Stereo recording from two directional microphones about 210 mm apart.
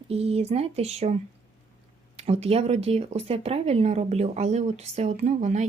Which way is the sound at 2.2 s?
30° right (ahead or behind).